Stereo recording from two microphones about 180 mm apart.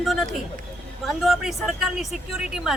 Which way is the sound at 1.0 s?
Centre (ahead or behind).